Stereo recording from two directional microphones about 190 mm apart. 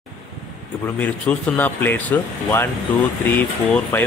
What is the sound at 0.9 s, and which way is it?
A man's voice, 10° left (ahead or behind).